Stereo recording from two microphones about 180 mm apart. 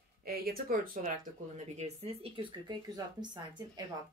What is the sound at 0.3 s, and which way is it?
Speech, 55° right (ahead or behind).